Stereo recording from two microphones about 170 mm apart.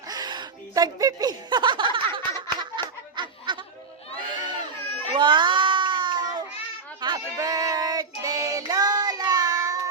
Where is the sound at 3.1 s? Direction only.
25° right (ahead or behind).